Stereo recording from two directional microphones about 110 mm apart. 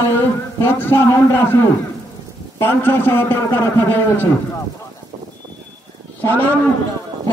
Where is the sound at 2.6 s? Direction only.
20° left (ahead or behind).